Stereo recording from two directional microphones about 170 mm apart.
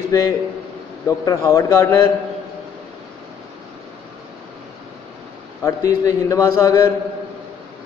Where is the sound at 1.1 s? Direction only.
20° left (ahead or behind).